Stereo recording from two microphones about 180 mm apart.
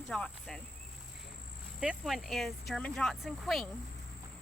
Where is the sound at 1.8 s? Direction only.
5° right (ahead or behind).